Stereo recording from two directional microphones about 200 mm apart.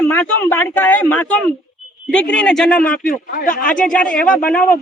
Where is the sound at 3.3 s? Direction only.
45° left (ahead or behind).